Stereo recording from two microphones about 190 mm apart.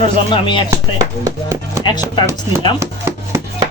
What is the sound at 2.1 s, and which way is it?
Speech, 25° left (ahead or behind).